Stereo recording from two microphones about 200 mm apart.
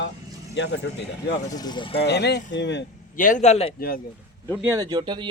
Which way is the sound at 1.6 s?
20° left (ahead or behind).